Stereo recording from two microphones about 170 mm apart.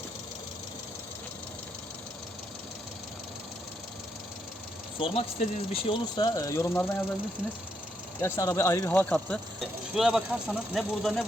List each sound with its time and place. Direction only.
4.9 s speech: 35° left (ahead or behind); by 6.9 s 15° left (ahead or behind)
8.2 s speech: 20° left (ahead or behind); by 11.3 s centre (ahead or behind)